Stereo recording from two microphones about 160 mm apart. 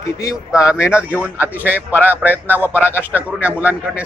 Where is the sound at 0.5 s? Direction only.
5° right (ahead or behind).